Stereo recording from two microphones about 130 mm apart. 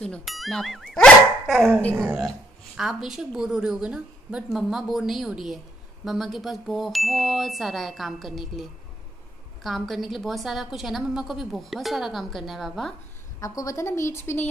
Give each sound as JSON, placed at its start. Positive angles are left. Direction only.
{"t": 0.0, "sound": "a woman's voice", "side_deg": 5}
{"t": 13.4, "sound": "a woman's voice", "side_deg": 25}